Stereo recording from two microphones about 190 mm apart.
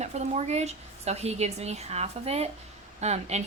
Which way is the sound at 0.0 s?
35° right (ahead or behind).